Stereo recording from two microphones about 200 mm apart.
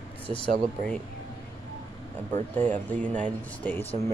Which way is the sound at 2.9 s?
5° left (ahead or behind).